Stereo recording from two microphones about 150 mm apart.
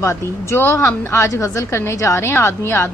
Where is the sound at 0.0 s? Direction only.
15° left (ahead or behind).